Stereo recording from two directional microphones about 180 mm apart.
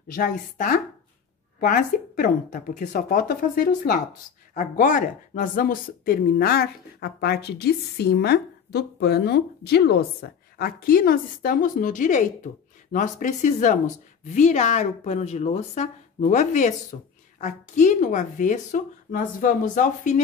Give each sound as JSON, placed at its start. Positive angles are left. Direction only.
{"t": 0.1, "sound": "a woman's voice", "side_deg": 50}
{"t": 4.6, "sound": "a woman's voice", "side_deg": 45}